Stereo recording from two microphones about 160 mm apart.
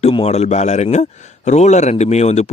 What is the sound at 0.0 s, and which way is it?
A man's voice, 35° left (ahead or behind).